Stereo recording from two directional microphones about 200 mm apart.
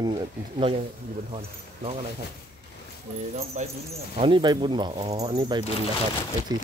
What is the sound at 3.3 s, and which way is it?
Speech, 30° right (ahead or behind).